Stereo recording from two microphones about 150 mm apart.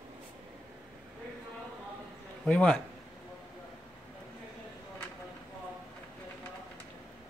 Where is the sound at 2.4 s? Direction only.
10° left (ahead or behind).